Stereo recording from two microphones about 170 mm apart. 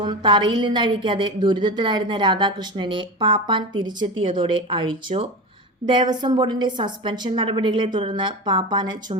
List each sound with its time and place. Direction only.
0.0 s a woman's voice: 30° right (ahead or behind)